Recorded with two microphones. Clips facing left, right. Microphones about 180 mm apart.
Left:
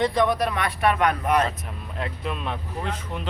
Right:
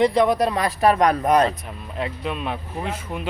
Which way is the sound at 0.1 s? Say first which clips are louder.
Right 4 dB; 25° right (ahead or behind).